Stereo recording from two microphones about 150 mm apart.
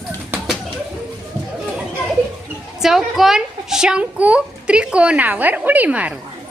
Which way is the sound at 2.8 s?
Centre (ahead or behind).